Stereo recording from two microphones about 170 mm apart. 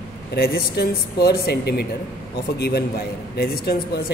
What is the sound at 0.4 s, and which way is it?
A man's voice, 65° left (ahead or behind).